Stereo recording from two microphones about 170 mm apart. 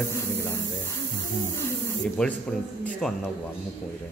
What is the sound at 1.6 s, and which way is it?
Speech, 15° left (ahead or behind).